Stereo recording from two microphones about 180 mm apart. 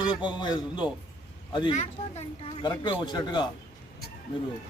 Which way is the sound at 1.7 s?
40° left (ahead or behind).